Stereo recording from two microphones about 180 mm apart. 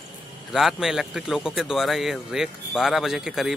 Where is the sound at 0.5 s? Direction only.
Centre (ahead or behind).